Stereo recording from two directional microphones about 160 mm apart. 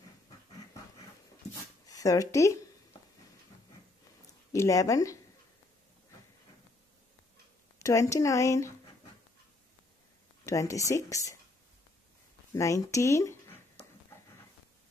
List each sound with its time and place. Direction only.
1.9 s speech: 20° left (ahead or behind)
4.5 s speech: 20° left (ahead or behind)
7.8 s speech: 20° left (ahead or behind)
10.4 s speech: 20° left (ahead or behind)
12.5 s speech: 20° left (ahead or behind)